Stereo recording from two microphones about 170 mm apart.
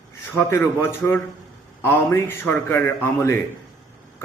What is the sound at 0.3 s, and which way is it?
A man's voice, 15° left (ahead or behind).